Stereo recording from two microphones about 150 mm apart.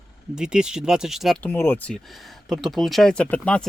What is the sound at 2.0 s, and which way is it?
Speech, centre (ahead or behind).